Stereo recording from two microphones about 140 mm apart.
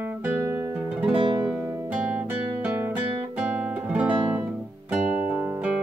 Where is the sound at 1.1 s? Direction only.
30° right (ahead or behind).